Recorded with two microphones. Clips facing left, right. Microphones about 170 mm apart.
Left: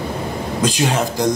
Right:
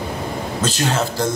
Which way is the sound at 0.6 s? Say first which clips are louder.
Left 3 dB; 15° left (ahead or behind).